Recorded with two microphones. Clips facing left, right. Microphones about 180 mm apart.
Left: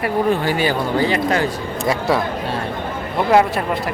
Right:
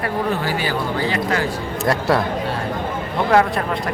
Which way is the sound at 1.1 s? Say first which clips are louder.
Left 3 dB; 20° left (ahead or behind).